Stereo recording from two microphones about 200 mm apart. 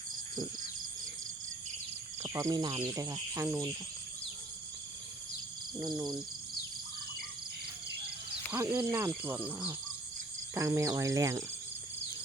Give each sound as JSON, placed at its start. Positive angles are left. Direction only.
{"t": 2.1, "sound": "speech", "side_deg": -15}
{"t": 6.0, "sound": "speech", "side_deg": -5}
{"t": 8.5, "sound": "speech", "side_deg": -10}